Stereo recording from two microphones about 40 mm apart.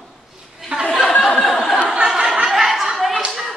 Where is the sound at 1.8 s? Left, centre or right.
Right.